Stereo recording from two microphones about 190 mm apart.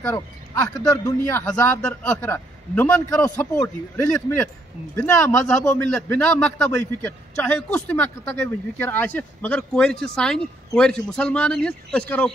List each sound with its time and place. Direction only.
0.0 s a man's voice: 15° left (ahead or behind)